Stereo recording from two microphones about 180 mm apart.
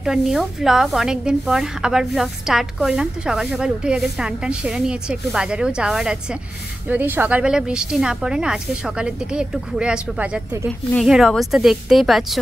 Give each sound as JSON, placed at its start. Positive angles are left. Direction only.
{"t": 0.0, "sound": "a woman's voice", "side_deg": 0}